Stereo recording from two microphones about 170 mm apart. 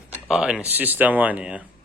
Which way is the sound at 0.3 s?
5° right (ahead or behind).